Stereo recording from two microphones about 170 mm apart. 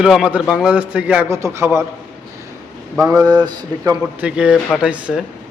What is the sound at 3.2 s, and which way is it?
Speech, 25° right (ahead or behind).